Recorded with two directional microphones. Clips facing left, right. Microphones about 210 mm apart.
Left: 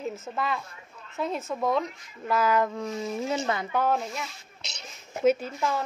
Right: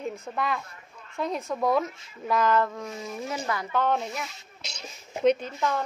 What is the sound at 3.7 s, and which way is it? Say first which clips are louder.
Speech: right 2 dB; 5° left (ahead or behind).